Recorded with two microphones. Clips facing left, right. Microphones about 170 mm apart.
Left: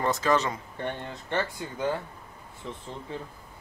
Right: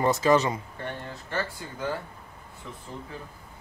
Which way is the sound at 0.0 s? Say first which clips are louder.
Right 3 dB; 10° right (ahead or behind).